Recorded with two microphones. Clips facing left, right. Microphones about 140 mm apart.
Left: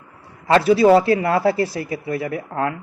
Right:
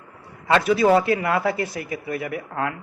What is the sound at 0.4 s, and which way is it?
Speech, 35° left (ahead or behind).